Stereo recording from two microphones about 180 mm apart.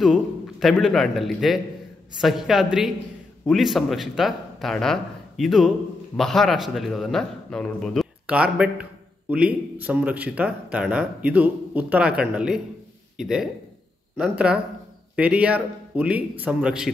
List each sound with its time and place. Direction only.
0.0 s a man's voice: centre (ahead or behind)
15.1 s speech: 5° right (ahead or behind)